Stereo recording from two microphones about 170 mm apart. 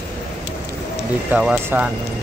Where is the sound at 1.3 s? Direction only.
10° right (ahead or behind).